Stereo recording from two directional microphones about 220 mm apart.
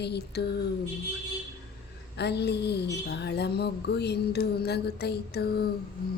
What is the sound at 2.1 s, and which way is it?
A woman's voice, 50° left (ahead or behind).